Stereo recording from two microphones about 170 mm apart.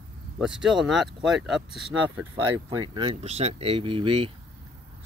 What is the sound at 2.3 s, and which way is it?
Speech, 25° right (ahead or behind).